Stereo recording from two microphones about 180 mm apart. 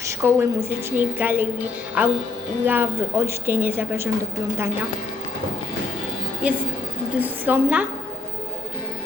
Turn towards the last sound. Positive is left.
turn(degrees=-10)  # may be behind; listen again after turning